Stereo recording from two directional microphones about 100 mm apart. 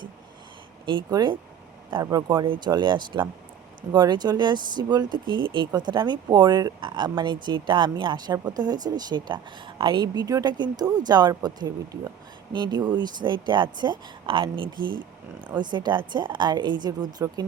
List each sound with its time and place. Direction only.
1.1 s speech: 45° right (ahead or behind)
2.0 s speech: 35° right (ahead or behind)
2.2 s speech: 45° right (ahead or behind)